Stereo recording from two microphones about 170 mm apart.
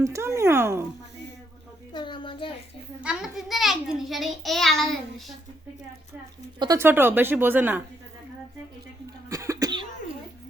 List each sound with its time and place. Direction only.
0.0 s speech: 15° right (ahead or behind)
1.9 s a sound: 25° left (ahead or behind)
3.0 s a child's voice: 5° right (ahead or behind)
6.6 s speech: 20° right (ahead or behind)
9.3 s cough: 20° right (ahead or behind)